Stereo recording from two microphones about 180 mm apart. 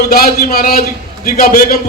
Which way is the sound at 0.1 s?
60° left (ahead or behind).